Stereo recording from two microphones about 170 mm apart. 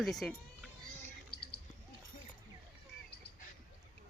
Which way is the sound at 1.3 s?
70° left (ahead or behind).